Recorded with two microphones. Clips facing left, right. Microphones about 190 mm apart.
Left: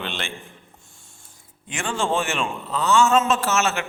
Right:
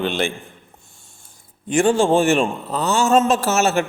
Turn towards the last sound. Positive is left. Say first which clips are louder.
# right 5 dB
turn(degrees=-35)  # may be behind; listen again after turning